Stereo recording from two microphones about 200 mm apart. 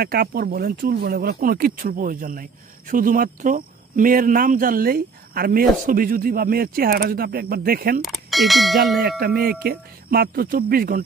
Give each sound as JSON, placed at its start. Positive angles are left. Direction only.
{"t": 0.0, "sound": "speech", "side_deg": -50}
{"t": 8.0, "sound": "speech", "side_deg": 0}
{"t": 9.2, "sound": "speech", "side_deg": -50}